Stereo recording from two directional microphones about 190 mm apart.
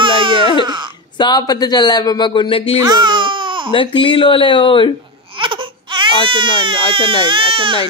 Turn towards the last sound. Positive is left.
turn(degrees=-25)  # may be behind; listen again after turning